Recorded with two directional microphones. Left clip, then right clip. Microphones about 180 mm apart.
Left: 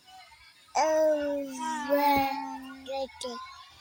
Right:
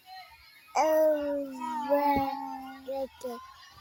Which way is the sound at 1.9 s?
Centre (ahead or behind).